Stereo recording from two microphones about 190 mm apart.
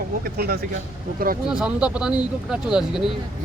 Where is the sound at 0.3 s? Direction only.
55° right (ahead or behind).